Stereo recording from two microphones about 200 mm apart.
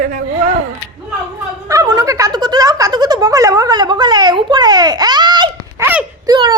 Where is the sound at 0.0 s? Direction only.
40° right (ahead or behind).